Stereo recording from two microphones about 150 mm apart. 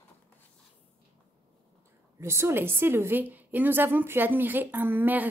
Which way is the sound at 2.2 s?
15° right (ahead or behind).